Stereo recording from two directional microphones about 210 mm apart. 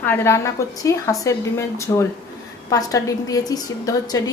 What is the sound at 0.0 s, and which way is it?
A woman's voice, 10° left (ahead or behind).